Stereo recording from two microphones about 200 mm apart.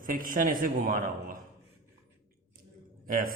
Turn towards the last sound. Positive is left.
turn(degrees=-45)  # may be behind; listen again after turning